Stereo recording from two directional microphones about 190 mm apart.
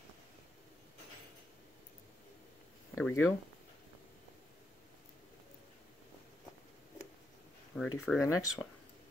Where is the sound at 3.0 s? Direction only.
10° left (ahead or behind).